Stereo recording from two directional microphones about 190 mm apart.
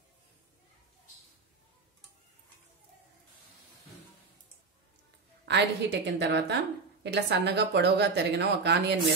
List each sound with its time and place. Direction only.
5.4 s a woman's voice: 65° right (ahead or behind)